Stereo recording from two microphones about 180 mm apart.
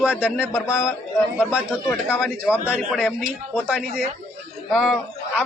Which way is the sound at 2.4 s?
10° right (ahead or behind).